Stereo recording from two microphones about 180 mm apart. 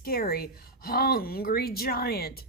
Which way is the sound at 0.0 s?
55° left (ahead or behind).